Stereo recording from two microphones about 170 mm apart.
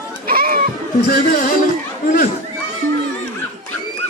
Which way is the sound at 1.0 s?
50° left (ahead or behind).